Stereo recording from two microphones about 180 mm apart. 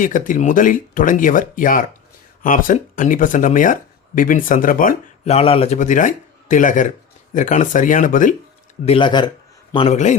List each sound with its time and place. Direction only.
0.0 s speech: 45° left (ahead or behind)
5.3 s speech: 35° left (ahead or behind)
8.8 s a man's voice: 30° left (ahead or behind)